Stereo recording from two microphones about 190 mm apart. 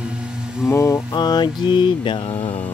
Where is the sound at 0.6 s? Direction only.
15° left (ahead or behind).